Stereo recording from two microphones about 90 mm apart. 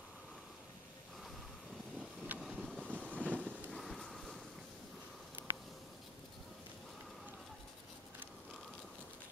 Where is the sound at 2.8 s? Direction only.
15° left (ahead or behind).